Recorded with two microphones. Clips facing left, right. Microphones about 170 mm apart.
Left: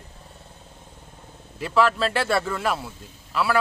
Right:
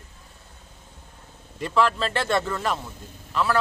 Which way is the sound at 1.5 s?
5° left (ahead or behind).